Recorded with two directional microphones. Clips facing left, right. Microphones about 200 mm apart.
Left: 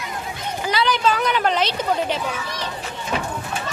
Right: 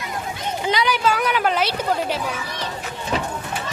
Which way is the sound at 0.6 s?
15° right (ahead or behind).